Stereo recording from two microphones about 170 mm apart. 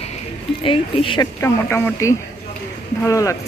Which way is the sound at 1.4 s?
15° left (ahead or behind).